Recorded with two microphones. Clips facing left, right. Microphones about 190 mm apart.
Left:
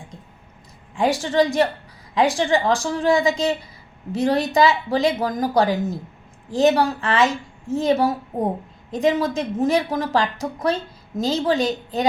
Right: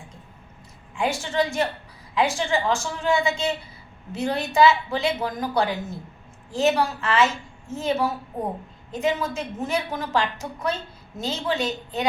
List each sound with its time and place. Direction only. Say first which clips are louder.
0.9 s a woman's voice: left 5 dB; 35° left (ahead or behind)